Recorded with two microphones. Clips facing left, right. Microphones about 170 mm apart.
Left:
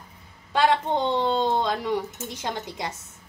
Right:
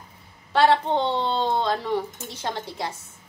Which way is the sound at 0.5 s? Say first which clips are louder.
Right 2 dB; 15° left (ahead or behind).